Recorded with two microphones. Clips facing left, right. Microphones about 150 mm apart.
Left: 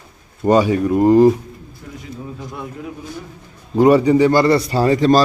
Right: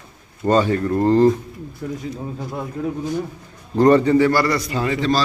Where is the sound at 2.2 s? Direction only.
35° right (ahead or behind).